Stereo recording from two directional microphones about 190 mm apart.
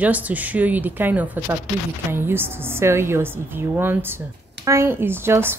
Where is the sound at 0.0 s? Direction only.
10° right (ahead or behind).